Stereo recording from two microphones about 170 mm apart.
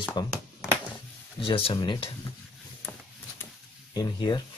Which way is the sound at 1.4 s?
35° left (ahead or behind).